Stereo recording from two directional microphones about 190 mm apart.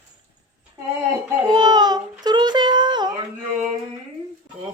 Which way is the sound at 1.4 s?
20° right (ahead or behind).